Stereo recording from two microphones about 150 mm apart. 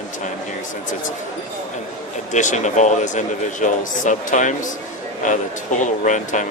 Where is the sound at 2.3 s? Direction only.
55° left (ahead or behind).